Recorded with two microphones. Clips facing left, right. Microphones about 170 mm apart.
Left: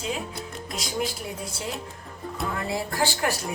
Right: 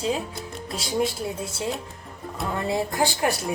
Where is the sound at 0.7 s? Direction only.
25° right (ahead or behind).